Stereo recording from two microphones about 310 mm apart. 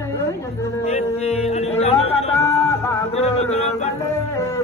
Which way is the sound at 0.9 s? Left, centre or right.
Left.